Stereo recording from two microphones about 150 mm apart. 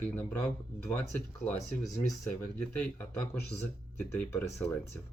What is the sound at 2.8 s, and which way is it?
Speech, 10° left (ahead or behind).